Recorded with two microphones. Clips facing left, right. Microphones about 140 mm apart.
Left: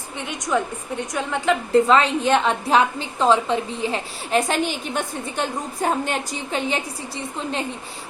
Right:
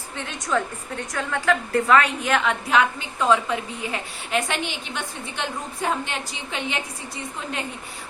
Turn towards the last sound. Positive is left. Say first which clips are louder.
# left 4 dB
turn(degrees=30)  # may be behind; listen again after turning